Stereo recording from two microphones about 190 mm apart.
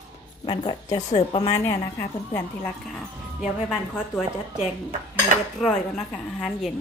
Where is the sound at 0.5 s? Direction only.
25° left (ahead or behind).